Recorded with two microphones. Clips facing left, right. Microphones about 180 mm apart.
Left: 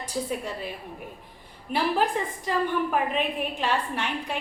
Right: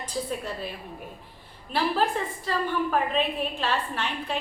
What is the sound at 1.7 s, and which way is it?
A woman's voice, 15° left (ahead or behind).